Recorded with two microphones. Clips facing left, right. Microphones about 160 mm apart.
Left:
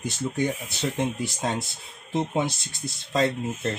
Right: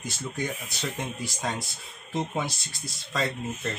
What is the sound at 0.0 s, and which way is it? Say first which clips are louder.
Speech: left 6 dB; 25° left (ahead or behind).